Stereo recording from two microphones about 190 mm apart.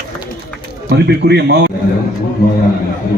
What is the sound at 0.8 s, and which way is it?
Speech, 60° right (ahead or behind).